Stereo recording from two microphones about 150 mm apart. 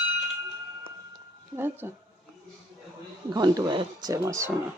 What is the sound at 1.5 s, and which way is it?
Speech, 15° right (ahead or behind).